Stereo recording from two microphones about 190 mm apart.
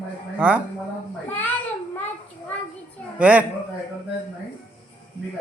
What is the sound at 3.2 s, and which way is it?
Speech, 5° right (ahead or behind).